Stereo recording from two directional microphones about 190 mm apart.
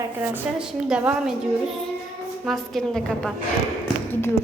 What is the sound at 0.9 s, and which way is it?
Speech, 5° right (ahead or behind).